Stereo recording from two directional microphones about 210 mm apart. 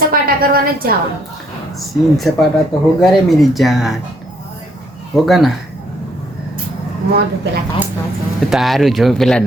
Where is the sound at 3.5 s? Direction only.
Centre (ahead or behind).